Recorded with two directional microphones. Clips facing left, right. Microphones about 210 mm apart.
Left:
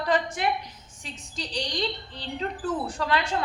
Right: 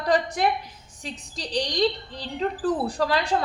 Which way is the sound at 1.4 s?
40° right (ahead or behind).